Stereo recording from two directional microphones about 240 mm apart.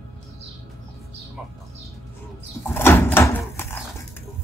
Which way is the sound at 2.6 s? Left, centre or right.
Centre.